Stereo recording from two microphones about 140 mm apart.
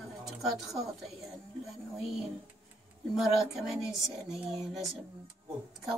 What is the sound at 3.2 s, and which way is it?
Music, centre (ahead or behind).